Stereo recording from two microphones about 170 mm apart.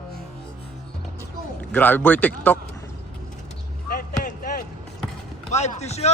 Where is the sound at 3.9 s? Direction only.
55° left (ahead or behind).